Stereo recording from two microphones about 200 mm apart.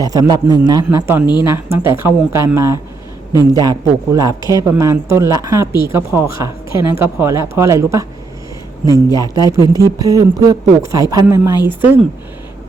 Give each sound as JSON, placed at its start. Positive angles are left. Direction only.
{"t": 0.0, "sound": "a man's voice", "side_deg": -20}